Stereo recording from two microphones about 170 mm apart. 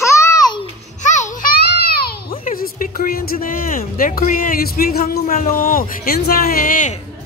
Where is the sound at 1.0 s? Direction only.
45° left (ahead or behind); by 2.0 s 65° left (ahead or behind).